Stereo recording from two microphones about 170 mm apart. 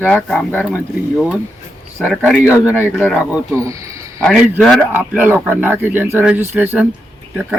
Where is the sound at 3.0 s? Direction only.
5° left (ahead or behind).